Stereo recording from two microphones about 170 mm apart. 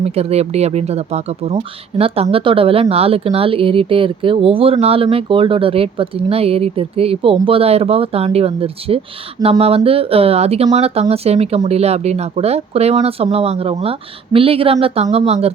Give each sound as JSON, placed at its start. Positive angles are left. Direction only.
{"t": 0.0, "sound": "speech", "side_deg": -35}